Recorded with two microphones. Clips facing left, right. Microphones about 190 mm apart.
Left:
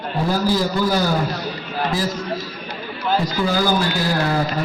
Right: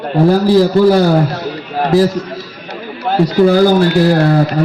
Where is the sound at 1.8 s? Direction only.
65° right (ahead or behind).